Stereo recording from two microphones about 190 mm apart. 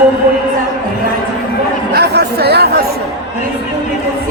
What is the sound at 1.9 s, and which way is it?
Speech, 60° right (ahead or behind).